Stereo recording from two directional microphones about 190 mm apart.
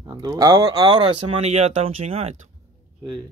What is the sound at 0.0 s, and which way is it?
Speech, 20° right (ahead or behind).